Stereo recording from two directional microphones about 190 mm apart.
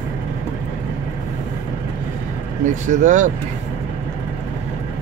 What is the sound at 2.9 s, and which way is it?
Speech, 40° right (ahead or behind).